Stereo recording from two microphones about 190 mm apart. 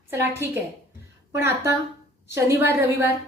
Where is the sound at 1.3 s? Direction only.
15° right (ahead or behind).